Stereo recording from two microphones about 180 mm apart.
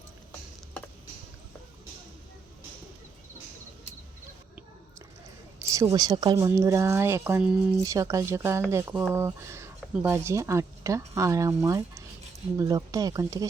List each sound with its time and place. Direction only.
5.5 s speech: 15° right (ahead or behind)